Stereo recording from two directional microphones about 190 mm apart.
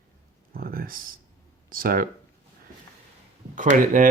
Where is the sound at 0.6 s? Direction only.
50° right (ahead or behind).